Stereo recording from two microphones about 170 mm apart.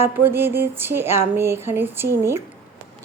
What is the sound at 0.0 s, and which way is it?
A woman's voice, 15° right (ahead or behind).